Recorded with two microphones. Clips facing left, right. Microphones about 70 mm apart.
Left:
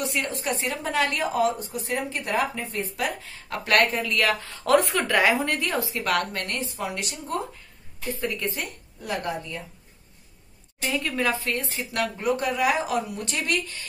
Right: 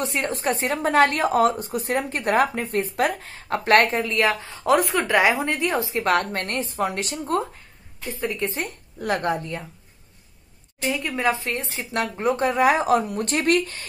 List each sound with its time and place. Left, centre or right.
0.0 s a woman's voice: right
8.2 s a woman's voice: right
9.0 s a woman's voice: right
11.1 s a woman's voice: right